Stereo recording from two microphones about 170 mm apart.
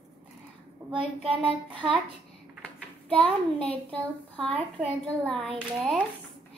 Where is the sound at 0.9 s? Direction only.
30° right (ahead or behind).